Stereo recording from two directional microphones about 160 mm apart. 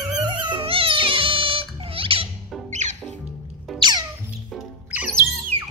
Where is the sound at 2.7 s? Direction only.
45° right (ahead or behind).